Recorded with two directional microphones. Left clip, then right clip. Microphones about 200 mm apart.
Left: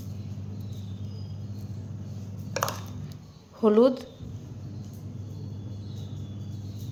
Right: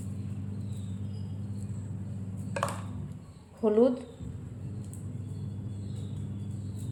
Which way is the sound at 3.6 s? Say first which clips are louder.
Left 4 dB; 30° left (ahead or behind).